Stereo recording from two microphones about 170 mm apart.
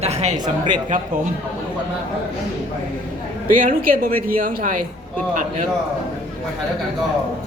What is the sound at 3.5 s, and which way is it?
Speech, 55° right (ahead or behind).